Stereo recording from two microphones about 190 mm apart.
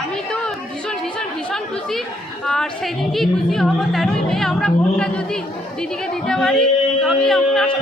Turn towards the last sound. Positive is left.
turn(degrees=0)  # may be behind; listen again after turning